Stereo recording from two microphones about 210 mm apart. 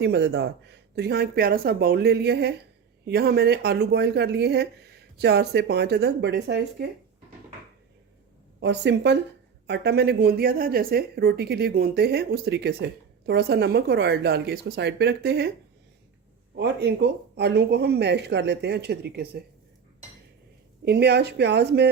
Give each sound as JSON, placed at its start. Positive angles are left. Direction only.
{"t": 0.0, "sound": "speech", "side_deg": -50}
{"t": 8.6, "sound": "speech", "side_deg": -55}
{"t": 16.6, "sound": "speech", "side_deg": -55}
{"t": 20.8, "sound": "speech", "side_deg": -50}